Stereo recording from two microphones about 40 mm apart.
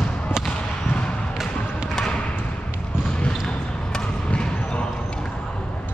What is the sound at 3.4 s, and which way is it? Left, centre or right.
Basketball bounce, centre.